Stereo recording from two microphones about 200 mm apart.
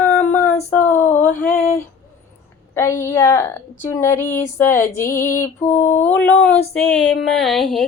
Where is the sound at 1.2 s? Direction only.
10° left (ahead or behind).